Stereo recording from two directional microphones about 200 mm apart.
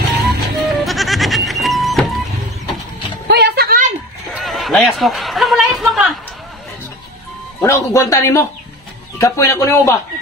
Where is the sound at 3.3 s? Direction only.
55° right (ahead or behind).